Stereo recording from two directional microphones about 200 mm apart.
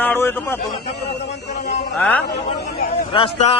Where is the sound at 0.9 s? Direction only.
55° left (ahead or behind).